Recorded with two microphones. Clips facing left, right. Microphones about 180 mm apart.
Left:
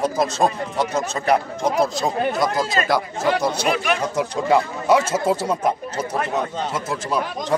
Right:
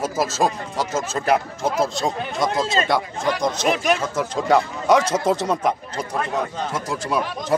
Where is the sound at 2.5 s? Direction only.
25° right (ahead or behind).